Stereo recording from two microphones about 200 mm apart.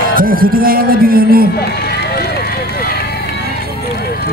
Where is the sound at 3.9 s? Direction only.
55° left (ahead or behind).